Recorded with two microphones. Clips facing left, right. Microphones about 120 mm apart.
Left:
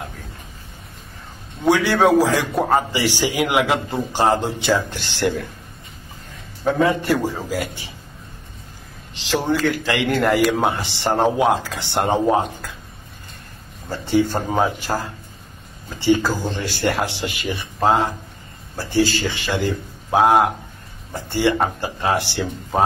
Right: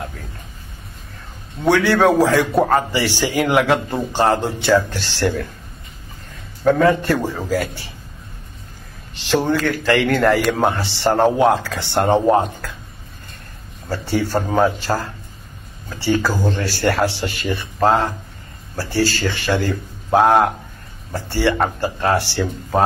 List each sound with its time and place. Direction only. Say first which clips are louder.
1.7 s a man's voice: right 1 dB; 15° left (ahead or behind)
6.6 s a man's voice: right 4 dB; 15° left (ahead or behind)
9.1 s a man's voice: right 3 dB; 15° left (ahead or behind)
13.8 s a man's voice: left 2 dB; 15° left (ahead or behind)
20.1 s a man's voice: right 1 dB; 5° left (ahead or behind)
21.1 s a man's voice: even; 15° left (ahead or behind)